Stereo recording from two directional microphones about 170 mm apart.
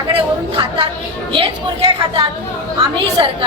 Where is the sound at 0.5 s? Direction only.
30° right (ahead or behind).